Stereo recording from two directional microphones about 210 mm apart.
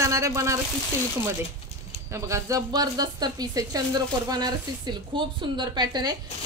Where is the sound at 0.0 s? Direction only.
15° right (ahead or behind).